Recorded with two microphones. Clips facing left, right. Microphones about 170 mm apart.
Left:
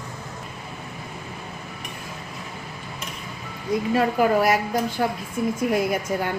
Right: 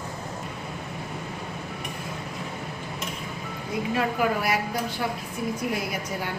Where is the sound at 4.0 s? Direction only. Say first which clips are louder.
Left 6 dB; 45° left (ahead or behind).